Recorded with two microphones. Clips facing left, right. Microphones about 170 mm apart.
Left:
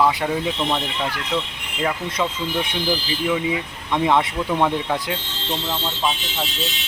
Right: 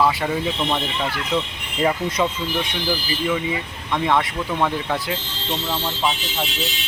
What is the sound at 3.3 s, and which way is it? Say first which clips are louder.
Speech: left 2 dB; 10° left (ahead or behind).